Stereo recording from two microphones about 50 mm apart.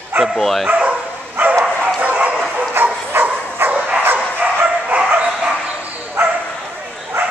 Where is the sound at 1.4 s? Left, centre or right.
Right.